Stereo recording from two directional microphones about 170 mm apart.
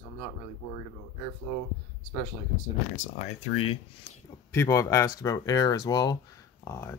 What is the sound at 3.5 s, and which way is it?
Speech, 75° left (ahead or behind).